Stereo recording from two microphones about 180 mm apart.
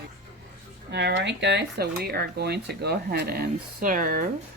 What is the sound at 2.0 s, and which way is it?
Speech, 65° right (ahead or behind).